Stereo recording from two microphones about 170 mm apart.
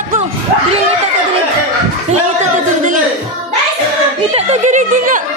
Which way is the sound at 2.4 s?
50° right (ahead or behind).